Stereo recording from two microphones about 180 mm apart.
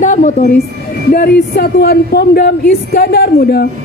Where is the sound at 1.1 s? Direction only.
60° left (ahead or behind).